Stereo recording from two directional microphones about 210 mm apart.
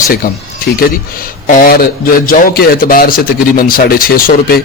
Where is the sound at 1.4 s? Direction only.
40° left (ahead or behind).